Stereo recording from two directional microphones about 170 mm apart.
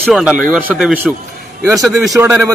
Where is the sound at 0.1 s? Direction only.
5° right (ahead or behind).